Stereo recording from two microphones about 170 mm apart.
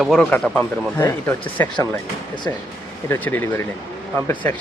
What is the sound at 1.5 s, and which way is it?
Speech, 25° left (ahead or behind).